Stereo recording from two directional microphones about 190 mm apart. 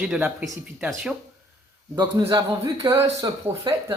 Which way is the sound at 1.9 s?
20° right (ahead or behind).